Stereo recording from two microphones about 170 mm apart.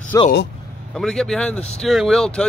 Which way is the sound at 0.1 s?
15° left (ahead or behind).